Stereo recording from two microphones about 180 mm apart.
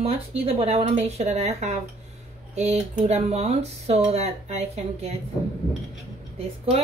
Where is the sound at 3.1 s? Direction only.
35° right (ahead or behind).